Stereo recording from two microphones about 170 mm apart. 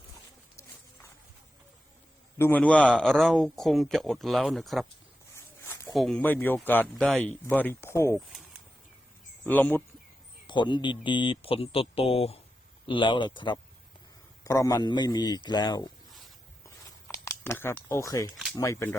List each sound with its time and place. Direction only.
2.4 s speech: 10° left (ahead or behind)
5.6 s snake: 20° left (ahead or behind)
5.9 s speech: centre (ahead or behind)
9.4 s speech: 10° left (ahead or behind)
10.4 s a man's voice: 25° left (ahead or behind)
16.6 s a sound: 15° left (ahead or behind)
18.5 s speech: 20° left (ahead or behind)